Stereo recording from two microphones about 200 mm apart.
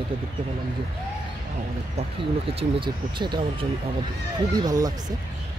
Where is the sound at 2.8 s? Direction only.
25° right (ahead or behind).